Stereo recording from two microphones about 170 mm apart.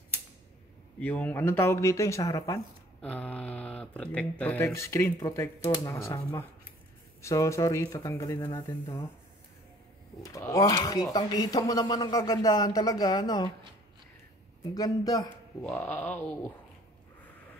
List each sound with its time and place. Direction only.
0.9 s speech: 10° left (ahead or behind)
3.0 s speech: 5° left (ahead or behind)
10.2 s speech: 20° left (ahead or behind)
14.6 s speech: 20° left (ahead or behind)